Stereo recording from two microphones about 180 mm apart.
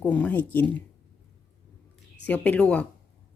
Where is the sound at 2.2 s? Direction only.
10° left (ahead or behind).